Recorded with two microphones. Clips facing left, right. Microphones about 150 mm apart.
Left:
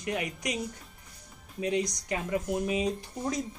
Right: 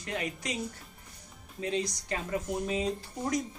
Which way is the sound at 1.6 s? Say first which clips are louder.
Left 3 dB; 15° left (ahead or behind).